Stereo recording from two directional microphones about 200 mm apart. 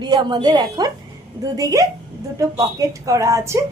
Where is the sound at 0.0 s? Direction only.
20° right (ahead or behind).